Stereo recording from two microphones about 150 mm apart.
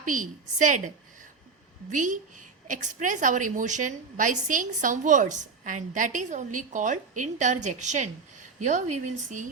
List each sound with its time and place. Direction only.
0.0 s a woman's voice: 60° right (ahead or behind)